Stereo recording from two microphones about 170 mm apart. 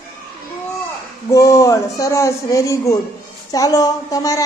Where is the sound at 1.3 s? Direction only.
20° left (ahead or behind).